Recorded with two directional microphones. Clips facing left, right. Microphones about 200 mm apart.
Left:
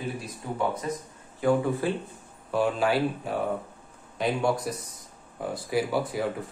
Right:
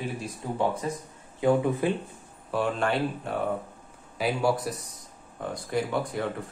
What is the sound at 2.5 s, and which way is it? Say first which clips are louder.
Speech: left 2 dB; centre (ahead or behind).